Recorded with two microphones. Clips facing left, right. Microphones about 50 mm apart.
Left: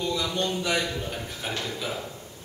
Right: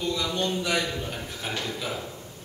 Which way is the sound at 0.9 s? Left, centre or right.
Centre.